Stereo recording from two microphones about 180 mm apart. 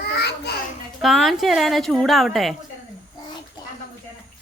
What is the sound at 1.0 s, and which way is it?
A woman's voice, centre (ahead or behind).